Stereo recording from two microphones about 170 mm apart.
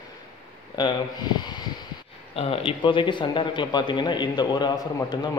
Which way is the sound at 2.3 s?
35° left (ahead or behind).